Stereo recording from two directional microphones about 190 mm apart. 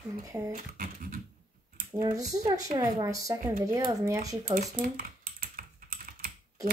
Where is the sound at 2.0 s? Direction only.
20° right (ahead or behind).